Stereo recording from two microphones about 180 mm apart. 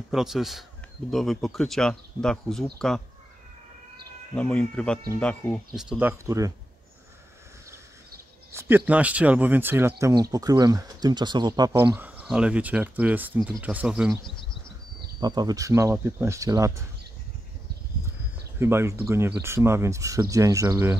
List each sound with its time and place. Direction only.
0.1 s speech: centre (ahead or behind)
4.4 s speech: 5° left (ahead or behind)
5.8 s speech: 5° right (ahead or behind)
8.5 s speech: 15° right (ahead or behind)
14.2 s speech: 25° left (ahead or behind)
15.1 s speech: 25° right (ahead or behind)
18.6 s speech: 15° right (ahead or behind)